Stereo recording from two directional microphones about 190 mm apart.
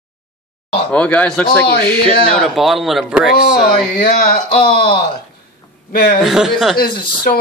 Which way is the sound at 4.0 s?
50° left (ahead or behind).